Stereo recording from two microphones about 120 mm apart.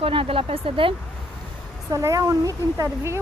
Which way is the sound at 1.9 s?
30° right (ahead or behind).